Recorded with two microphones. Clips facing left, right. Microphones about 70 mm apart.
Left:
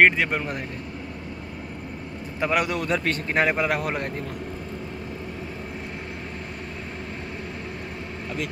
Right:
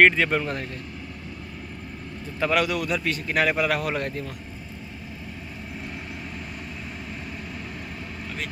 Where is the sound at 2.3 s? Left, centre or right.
Left.